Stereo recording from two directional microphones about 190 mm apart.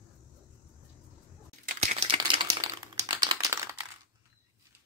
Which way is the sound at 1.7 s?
30° right (ahead or behind).